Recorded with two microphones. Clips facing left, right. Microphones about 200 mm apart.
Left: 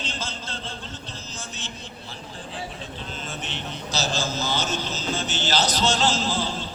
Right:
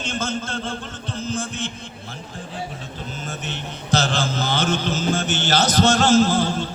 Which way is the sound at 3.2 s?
45° right (ahead or behind).